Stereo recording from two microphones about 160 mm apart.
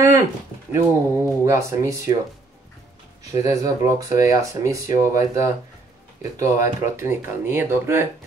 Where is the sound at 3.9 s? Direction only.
20° right (ahead or behind).